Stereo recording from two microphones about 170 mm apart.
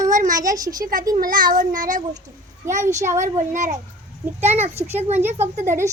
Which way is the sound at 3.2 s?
45° right (ahead or behind).